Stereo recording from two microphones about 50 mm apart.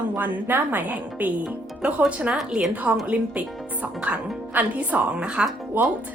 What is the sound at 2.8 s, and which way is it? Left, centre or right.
Speech, right.